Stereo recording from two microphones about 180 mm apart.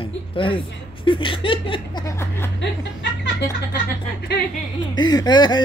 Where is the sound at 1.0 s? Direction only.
30° left (ahead or behind).